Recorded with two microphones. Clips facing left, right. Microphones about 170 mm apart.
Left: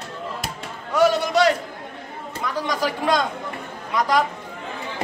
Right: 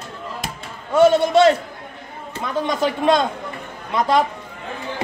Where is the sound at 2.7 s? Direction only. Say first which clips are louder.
Right 4 dB; 25° right (ahead or behind).